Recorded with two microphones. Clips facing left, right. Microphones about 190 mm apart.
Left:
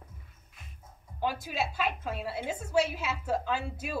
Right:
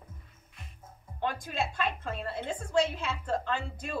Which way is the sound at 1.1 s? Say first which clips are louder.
Left 1 dB; 5° left (ahead or behind).